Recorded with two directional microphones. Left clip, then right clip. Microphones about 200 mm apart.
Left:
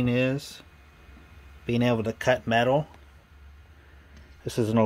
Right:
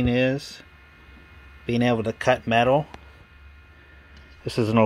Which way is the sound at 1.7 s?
5° right (ahead or behind).